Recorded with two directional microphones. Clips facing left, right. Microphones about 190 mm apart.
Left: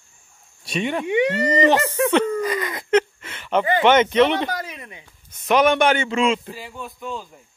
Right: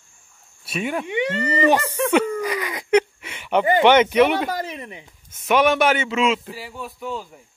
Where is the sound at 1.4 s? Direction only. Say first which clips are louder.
Even; 15° left (ahead or behind).